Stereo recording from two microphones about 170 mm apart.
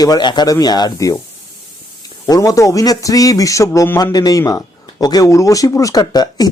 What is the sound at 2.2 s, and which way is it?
Speech, 20° left (ahead or behind).